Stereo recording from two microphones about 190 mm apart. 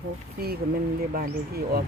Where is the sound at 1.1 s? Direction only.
50° right (ahead or behind).